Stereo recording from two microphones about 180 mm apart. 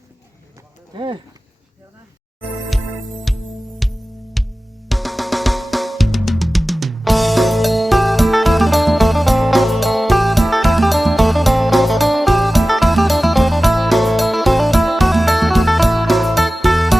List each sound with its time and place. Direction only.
0.9 s speech: 30° right (ahead or behind)
3.3 s music: centre (ahead or behind)